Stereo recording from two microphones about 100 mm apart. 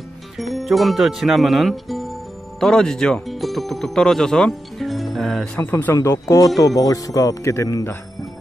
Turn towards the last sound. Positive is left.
turn(degrees=30)  # may be behind; listen again after turning